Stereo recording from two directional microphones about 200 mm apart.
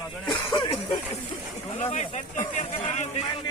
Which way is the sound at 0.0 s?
20° left (ahead or behind).